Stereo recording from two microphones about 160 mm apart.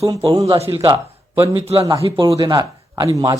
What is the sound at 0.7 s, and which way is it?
Speech, 25° right (ahead or behind).